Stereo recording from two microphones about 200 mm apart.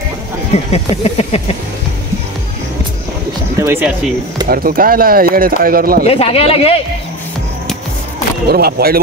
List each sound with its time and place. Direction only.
0.5 s a sound: 30° left (ahead or behind)
3.5 s speech: 15° right (ahead or behind)
4.5 s speech: 45° right (ahead or behind)
6.0 s speech: 30° left (ahead or behind)
8.5 s speech: 50° right (ahead or behind)